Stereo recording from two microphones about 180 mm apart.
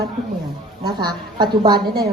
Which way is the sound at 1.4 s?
25° right (ahead or behind).